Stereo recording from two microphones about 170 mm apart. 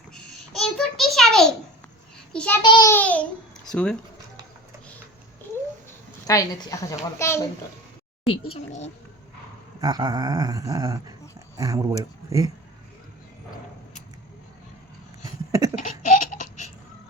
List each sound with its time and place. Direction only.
0.1 s a sound: 5° left (ahead or behind)
2.3 s babbling: 5° left (ahead or behind)
2.6 s a woman's voice: 25° left (ahead or behind)
2.9 s babbling: 10° left (ahead or behind)
3.7 s speech: 5° left (ahead or behind)
6.2 s a woman's voice: 20° left (ahead or behind)
8.3 s speech: 35° left (ahead or behind)
9.8 s dog: 25° right (ahead or behind)
15.2 s a sound: 20° right (ahead or behind)
15.8 s laughter: 50° left (ahead or behind)